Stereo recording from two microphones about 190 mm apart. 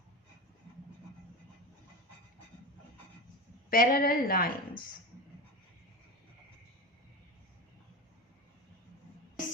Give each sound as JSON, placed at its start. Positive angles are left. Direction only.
{"t": 3.7, "sound": "a woman's voice", "side_deg": 50}